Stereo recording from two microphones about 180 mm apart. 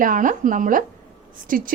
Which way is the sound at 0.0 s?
45° right (ahead or behind).